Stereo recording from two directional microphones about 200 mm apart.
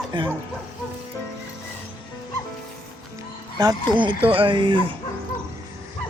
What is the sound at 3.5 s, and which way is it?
A man's voice, 20° right (ahead or behind).